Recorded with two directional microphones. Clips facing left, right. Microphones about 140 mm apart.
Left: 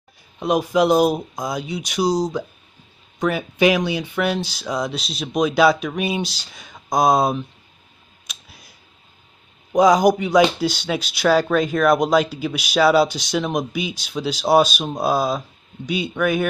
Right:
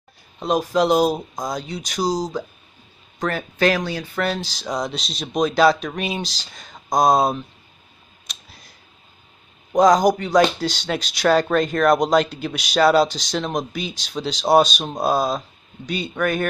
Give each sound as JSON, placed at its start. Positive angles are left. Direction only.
{"t": 0.4, "sound": "speech", "side_deg": 10}
{"t": 3.2, "sound": "speech", "side_deg": 10}
{"t": 8.3, "sound": "a sound", "side_deg": 5}
{"t": 9.7, "sound": "speech", "side_deg": 10}